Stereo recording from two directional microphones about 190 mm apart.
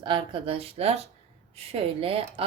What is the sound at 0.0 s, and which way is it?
A woman's voice, 25° right (ahead or behind).